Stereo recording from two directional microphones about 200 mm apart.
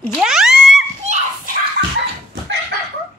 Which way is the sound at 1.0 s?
35° right (ahead or behind).